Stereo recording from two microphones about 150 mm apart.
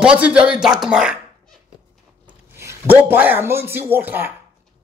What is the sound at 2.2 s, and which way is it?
A man's voice, 15° right (ahead or behind).